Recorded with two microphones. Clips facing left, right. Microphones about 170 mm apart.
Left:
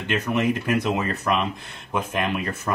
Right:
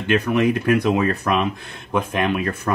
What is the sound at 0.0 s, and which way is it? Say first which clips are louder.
Speech: right 5 dB; centre (ahead or behind).